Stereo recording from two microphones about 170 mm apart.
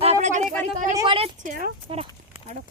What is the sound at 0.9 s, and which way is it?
Speech, 30° right (ahead or behind).